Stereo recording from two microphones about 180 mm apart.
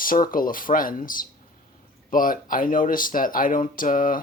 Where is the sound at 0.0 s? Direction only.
50° left (ahead or behind).